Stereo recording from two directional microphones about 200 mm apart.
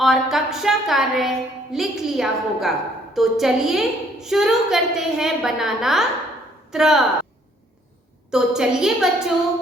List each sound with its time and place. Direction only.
0.0 s a woman's voice: centre (ahead or behind)
8.3 s a woman's voice: 5° right (ahead or behind)